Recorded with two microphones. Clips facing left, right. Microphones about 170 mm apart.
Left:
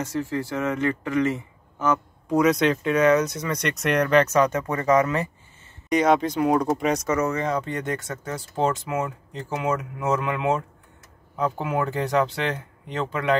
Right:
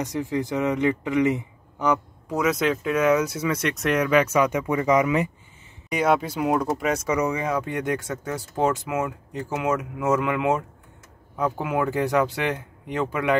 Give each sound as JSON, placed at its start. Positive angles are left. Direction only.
{"t": 0.0, "sound": "speech", "side_deg": -15}
{"t": 2.2, "sound": "speech", "side_deg": -5}